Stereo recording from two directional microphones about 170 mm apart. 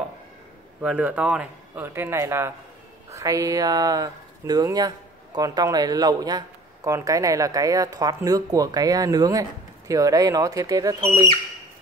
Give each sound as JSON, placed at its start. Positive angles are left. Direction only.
{"t": 0.7, "sound": "a man's voice", "side_deg": -5}